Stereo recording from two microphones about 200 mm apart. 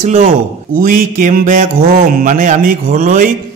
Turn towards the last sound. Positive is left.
turn(degrees=-40)  # may be behind; listen again after turning